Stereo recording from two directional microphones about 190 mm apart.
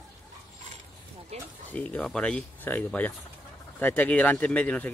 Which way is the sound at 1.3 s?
35° right (ahead or behind).